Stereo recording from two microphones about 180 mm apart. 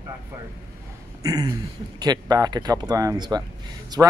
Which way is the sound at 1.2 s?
20° right (ahead or behind).